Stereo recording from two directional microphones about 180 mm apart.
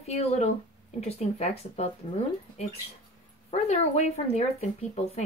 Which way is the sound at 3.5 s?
40° left (ahead or behind).